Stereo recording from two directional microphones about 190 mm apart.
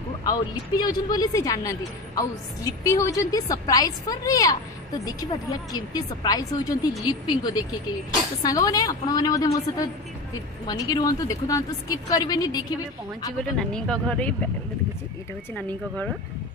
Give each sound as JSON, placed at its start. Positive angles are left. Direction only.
{"t": 0.2, "sound": "a woman's voice", "side_deg": 20}
{"t": 13.4, "sound": "speech", "side_deg": 5}